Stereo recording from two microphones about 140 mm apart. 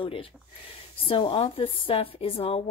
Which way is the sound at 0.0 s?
40° left (ahead or behind).